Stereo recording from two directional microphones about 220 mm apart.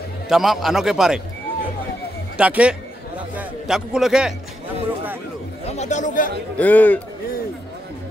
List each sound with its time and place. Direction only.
0.3 s a man's voice: centre (ahead or behind)
2.3 s a man's voice: 5° right (ahead or behind)
5.7 s speech: 30° left (ahead or behind)
6.6 s a man's voice: 5° left (ahead or behind)